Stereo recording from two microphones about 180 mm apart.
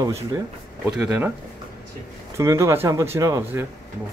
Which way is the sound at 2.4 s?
15° right (ahead or behind).